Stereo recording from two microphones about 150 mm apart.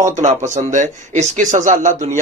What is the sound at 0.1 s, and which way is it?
A man's voice, 55° right (ahead or behind).